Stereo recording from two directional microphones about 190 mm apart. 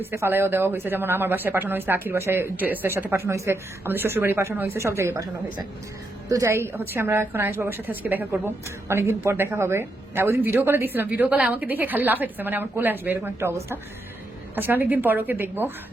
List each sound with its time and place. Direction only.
0.0 s speech: 10° right (ahead or behind)